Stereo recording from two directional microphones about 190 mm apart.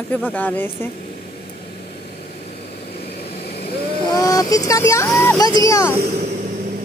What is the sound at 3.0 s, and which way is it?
Vehicle, 55° left (ahead or behind).